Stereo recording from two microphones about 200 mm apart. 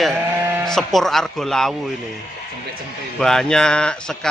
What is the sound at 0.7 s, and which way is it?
Speech, centre (ahead or behind).